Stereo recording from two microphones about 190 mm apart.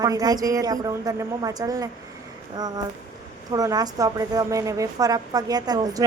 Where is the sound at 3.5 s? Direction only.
20° right (ahead or behind).